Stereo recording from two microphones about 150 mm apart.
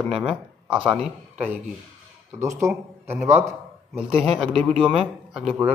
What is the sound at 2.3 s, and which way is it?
Speech, 20° right (ahead or behind).